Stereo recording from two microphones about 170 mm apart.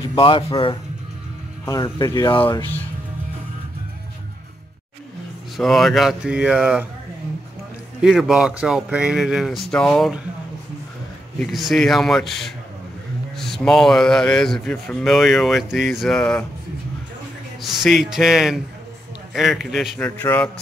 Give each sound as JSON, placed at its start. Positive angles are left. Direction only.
{"t": 0.0, "sound": "speech", "side_deg": 30}
{"t": 1.7, "sound": "speech", "side_deg": 20}
{"t": 5.6, "sound": "speech", "side_deg": 0}
{"t": 8.0, "sound": "speech", "side_deg": -5}
{"t": 11.3, "sound": "speech", "side_deg": 0}
{"t": 17.6, "sound": "speech", "side_deg": 0}
{"t": 20.2, "sound": "speech", "side_deg": 10}